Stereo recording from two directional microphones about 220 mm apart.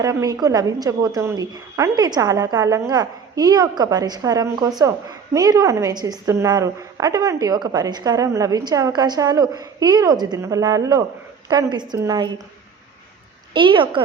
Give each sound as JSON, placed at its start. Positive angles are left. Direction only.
{"t": 0.0, "sound": "a woman's voice", "side_deg": -15}
{"t": 13.5, "sound": "a woman's voice", "side_deg": -20}